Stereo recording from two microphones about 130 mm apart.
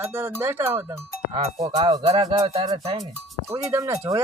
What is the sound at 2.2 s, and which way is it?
Speech, 30° right (ahead or behind).